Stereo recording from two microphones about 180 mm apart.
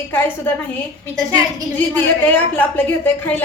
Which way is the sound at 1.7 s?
10° left (ahead or behind).